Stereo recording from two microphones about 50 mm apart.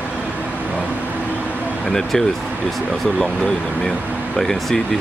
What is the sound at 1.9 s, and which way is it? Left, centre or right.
Speech, centre.